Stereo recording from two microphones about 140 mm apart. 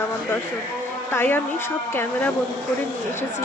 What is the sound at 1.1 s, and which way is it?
Speech, 15° left (ahead or behind).